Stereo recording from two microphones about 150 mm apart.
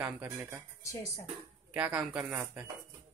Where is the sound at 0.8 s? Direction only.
20° left (ahead or behind).